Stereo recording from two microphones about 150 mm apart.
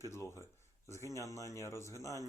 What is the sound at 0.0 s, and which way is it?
Speech, 20° left (ahead or behind).